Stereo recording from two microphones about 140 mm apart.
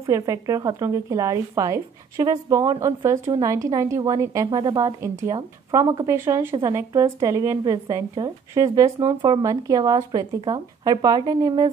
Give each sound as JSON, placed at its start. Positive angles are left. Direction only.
{"t": 0.0, "sound": "a woman's voice", "side_deg": -20}